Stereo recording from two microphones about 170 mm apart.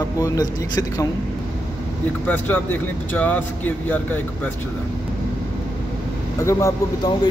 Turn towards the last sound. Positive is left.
turn(degrees=20)  # may be behind; listen again after turning